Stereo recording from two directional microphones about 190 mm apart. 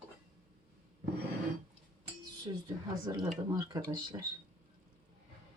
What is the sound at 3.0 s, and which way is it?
Speech, 20° right (ahead or behind).